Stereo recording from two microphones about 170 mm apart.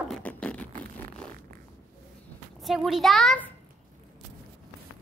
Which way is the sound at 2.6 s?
Centre (ahead or behind).